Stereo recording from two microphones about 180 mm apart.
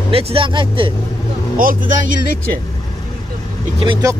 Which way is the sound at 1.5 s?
50° right (ahead or behind).